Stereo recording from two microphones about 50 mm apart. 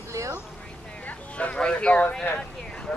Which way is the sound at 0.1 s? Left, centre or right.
Right.